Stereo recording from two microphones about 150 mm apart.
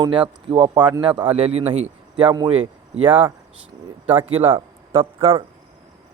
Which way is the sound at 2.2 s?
30° right (ahead or behind).